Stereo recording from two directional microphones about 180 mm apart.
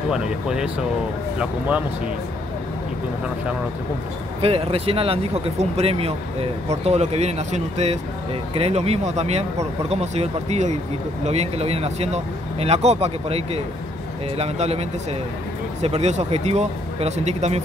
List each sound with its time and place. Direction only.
0.1 s speech: 5° right (ahead or behind)
4.4 s speech: 30° right (ahead or behind)